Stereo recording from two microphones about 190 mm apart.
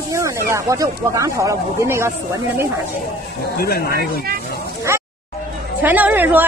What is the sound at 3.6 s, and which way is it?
Speech, 55° left (ahead or behind).